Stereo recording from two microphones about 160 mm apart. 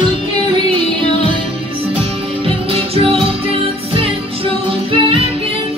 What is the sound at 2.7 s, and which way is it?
Music, 40° right (ahead or behind).